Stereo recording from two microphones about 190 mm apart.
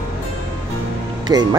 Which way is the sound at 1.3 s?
20° right (ahead or behind).